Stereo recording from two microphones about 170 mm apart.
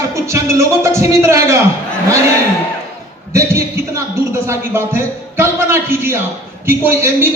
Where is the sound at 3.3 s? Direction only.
15° right (ahead or behind).